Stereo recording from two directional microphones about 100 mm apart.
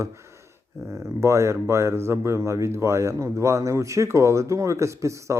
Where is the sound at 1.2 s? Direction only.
30° right (ahead or behind).